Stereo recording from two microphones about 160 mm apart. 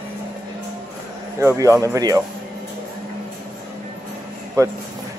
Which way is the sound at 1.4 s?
20° right (ahead or behind).